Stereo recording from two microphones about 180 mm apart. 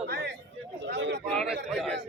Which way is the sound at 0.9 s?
75° right (ahead or behind).